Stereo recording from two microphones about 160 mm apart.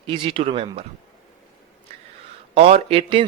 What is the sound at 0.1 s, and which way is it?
Speech, 35° right (ahead or behind).